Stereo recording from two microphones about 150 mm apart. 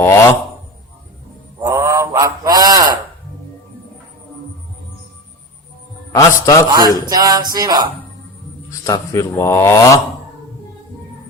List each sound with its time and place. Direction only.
0.0 s rub: 15° left (ahead or behind)
1.6 s mantra: 20° right (ahead or behind)
6.1 s speech: 20° left (ahead or behind)
6.7 s music: 25° right (ahead or behind)
8.8 s speech: 20° left (ahead or behind)